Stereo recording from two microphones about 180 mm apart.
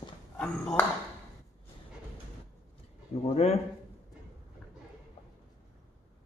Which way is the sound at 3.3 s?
35° left (ahead or behind).